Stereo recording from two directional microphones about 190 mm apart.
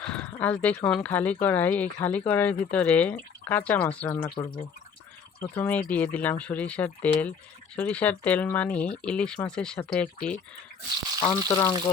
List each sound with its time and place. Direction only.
0.0 s a sound: 5° left (ahead or behind)
0.4 s speech: 5° left (ahead or behind)
5.4 s speech: 10° left (ahead or behind)
11.2 s speech: 20° left (ahead or behind)